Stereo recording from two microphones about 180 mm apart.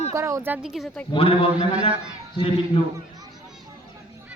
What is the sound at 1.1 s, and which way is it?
Speech, 30° left (ahead or behind).